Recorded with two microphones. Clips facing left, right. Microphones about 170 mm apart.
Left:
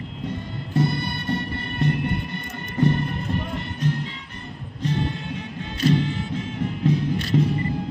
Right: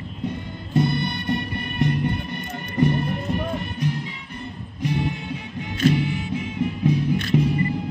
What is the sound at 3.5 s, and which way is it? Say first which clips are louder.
Music: even; 15° right (ahead or behind).